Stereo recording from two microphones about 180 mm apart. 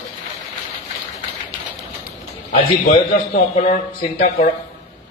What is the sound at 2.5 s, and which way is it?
A man's voice, 45° left (ahead or behind).